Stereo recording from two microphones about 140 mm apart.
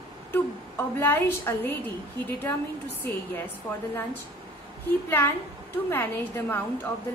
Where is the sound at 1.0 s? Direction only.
15° left (ahead or behind).